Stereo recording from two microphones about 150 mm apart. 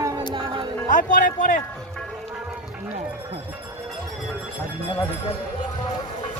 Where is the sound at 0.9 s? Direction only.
60° left (ahead or behind).